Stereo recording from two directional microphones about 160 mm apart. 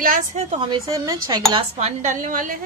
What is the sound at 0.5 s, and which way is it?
Speech, 35° right (ahead or behind).